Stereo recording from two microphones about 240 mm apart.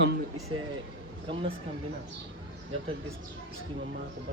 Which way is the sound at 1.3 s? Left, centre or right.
Centre.